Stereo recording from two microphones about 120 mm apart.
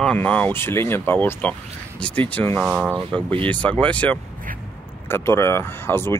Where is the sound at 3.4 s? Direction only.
10° left (ahead or behind).